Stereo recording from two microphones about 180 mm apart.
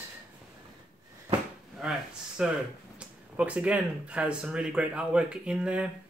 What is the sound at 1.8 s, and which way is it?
Speech, 5° right (ahead or behind).